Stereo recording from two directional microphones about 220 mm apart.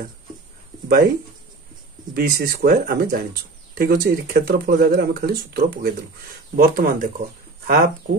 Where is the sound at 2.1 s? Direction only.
45° right (ahead or behind).